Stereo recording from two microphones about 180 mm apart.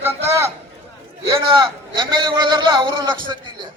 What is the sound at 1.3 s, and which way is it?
A man's voice, 25° right (ahead or behind).